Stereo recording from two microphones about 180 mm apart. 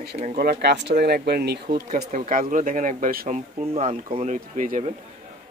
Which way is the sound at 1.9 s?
45° right (ahead or behind).